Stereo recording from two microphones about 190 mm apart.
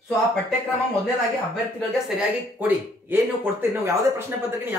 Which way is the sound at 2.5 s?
10° right (ahead or behind).